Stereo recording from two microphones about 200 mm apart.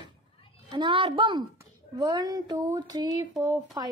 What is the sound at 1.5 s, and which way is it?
A woman's voice, 20° right (ahead or behind).